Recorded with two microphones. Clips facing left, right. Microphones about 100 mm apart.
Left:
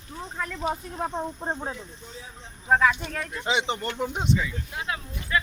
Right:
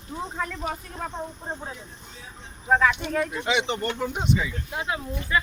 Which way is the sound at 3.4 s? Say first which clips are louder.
Right 1 dB; 30° left (ahead or behind).